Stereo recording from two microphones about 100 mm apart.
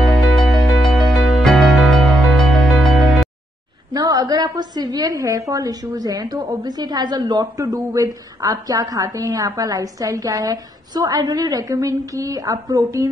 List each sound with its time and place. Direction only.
0.0 s music: 5° left (ahead or behind)
3.9 s a woman's voice: 40° right (ahead or behind)